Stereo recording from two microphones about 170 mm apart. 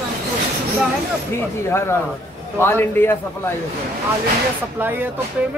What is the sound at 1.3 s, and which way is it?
A man's voice, 15° left (ahead or behind).